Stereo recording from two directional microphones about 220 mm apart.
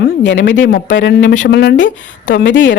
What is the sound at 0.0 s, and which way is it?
Speech, 55° left (ahead or behind).